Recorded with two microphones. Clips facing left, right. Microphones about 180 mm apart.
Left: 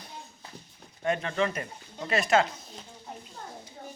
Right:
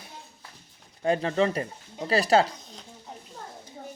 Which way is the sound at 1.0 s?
30° right (ahead or behind).